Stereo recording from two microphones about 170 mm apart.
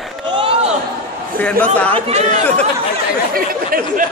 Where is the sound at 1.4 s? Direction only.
10° left (ahead or behind).